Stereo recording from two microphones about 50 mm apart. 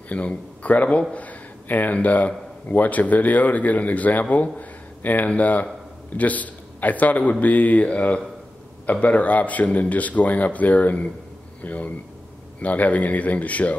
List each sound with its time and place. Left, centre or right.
0.1 s a man's voice: left